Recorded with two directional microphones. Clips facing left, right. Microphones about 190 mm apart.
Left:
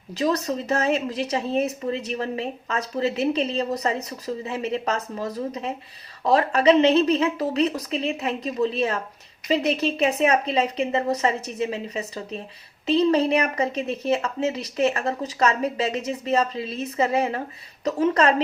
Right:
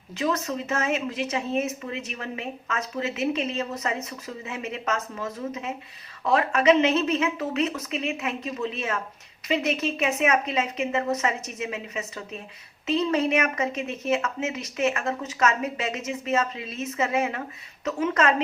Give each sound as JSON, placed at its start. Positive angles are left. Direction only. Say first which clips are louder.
{"t": 0.1, "sound": "a woman's voice", "louder": "left 3 dB", "side_deg": 35}